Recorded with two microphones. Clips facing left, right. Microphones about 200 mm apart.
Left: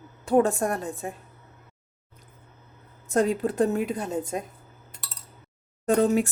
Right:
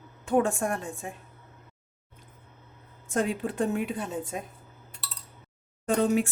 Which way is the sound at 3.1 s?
40° left (ahead or behind).